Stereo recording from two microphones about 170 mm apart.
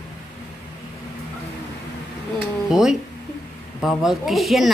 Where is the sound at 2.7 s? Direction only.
5° right (ahead or behind).